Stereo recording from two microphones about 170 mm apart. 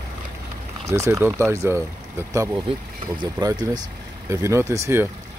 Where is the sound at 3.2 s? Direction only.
25° right (ahead or behind).